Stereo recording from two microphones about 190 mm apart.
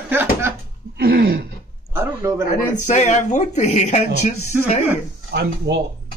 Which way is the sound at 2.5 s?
40° left (ahead or behind).